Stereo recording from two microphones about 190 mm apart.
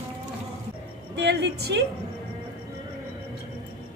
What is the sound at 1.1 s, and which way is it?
Speech, 65° right (ahead or behind).